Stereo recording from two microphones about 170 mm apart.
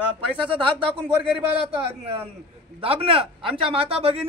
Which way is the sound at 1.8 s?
35° right (ahead or behind).